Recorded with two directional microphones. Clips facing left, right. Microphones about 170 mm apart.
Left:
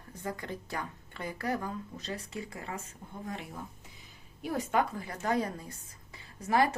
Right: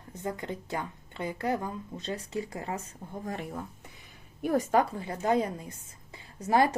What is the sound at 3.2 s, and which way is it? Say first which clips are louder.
A woman's voice: right 4 dB; 50° right (ahead or behind).